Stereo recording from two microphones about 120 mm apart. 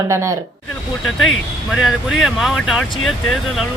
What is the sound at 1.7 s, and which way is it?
Speech, centre (ahead or behind).